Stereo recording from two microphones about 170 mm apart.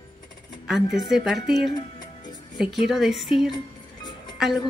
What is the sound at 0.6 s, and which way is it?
Speech, centre (ahead or behind).